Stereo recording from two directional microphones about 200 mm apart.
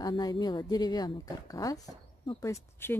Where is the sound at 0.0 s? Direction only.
20° left (ahead or behind).